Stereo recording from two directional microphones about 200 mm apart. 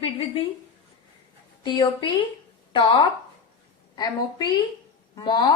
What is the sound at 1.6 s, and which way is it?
Speech, 20° left (ahead or behind).